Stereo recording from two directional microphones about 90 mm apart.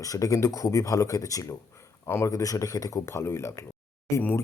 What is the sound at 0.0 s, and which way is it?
Speech, 40° left (ahead or behind).